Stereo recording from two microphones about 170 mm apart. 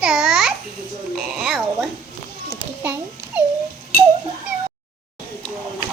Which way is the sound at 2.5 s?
10° right (ahead or behind).